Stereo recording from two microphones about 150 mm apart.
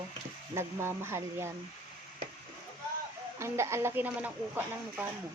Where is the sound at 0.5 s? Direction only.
15° right (ahead or behind).